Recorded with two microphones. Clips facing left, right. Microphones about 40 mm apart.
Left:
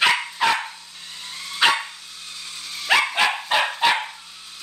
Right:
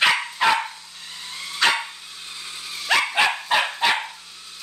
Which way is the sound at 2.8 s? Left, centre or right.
Centre.